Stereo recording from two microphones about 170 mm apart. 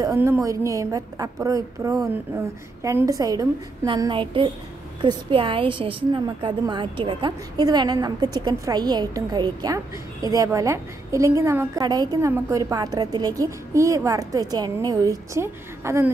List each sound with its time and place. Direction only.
0.0 s a woman's voice: 15° right (ahead or behind)